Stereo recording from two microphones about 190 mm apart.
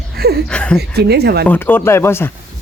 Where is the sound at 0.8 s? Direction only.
60° right (ahead or behind).